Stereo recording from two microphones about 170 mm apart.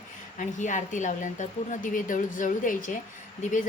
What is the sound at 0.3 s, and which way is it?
Speech, 45° left (ahead or behind).